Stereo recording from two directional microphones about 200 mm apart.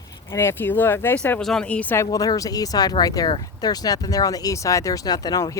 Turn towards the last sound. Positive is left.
turn(degrees=20)  # may be behind; listen again after turning